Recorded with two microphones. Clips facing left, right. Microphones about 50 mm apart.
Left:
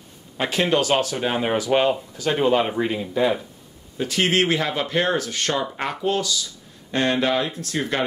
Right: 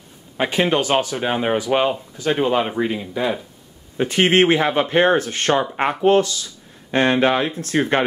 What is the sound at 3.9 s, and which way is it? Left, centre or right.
Speech, right.